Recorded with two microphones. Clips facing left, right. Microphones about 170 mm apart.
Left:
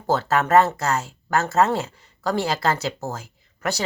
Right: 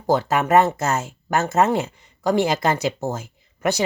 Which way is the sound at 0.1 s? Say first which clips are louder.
Right 1 dB; 15° right (ahead or behind).